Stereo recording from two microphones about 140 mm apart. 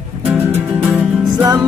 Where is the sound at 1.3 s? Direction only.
30° right (ahead or behind).